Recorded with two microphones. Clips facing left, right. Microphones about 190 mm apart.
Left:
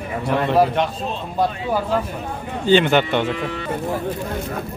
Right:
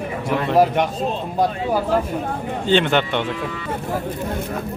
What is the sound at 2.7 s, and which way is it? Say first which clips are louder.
Speech: left 3 dB; 5° left (ahead or behind).